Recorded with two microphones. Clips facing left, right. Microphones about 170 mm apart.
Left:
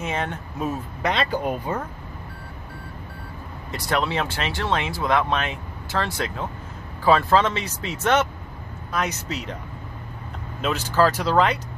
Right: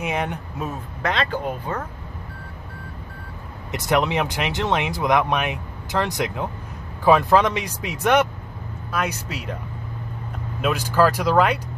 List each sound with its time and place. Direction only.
0.0 s speech: 15° right (ahead or behind)
0.6 s speech: centre (ahead or behind)
1.4 s speech: 10° left (ahead or behind)
3.7 s speech: 20° right (ahead or behind)
10.6 s speech: 10° right (ahead or behind)